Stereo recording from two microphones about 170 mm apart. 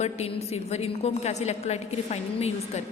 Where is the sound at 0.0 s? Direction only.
40° left (ahead or behind).